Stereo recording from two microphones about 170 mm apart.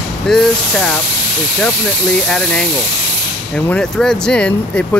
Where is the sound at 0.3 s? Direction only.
5° left (ahead or behind).